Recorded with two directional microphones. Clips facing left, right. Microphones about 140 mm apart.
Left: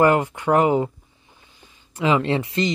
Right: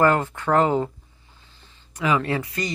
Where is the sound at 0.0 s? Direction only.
15° left (ahead or behind).